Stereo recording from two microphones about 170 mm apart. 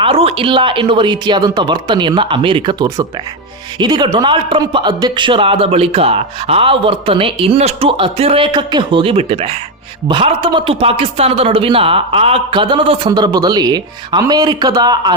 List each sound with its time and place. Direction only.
0.0 s a man's voice: 35° right (ahead or behind)